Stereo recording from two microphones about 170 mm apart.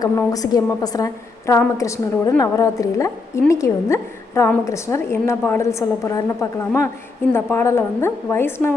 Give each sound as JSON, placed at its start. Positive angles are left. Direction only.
{"t": 0.0, "sound": "a woman's voice", "side_deg": 20}